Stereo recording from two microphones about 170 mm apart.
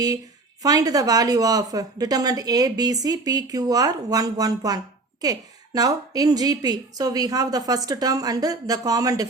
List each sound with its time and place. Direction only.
0.6 s speech: 20° right (ahead or behind)